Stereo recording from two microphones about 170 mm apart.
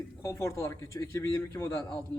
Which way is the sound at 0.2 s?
15° left (ahead or behind).